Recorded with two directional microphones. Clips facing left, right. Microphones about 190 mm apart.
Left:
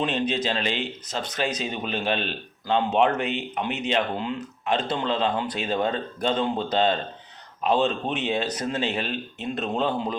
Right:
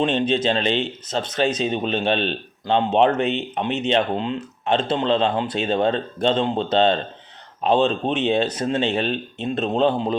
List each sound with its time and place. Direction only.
0.0 s speech: 25° right (ahead or behind)